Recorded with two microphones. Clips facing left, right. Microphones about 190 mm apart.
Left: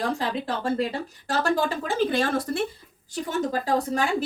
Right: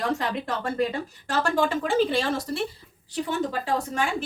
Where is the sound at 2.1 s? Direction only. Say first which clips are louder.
Left 1 dB; 50° left (ahead or behind).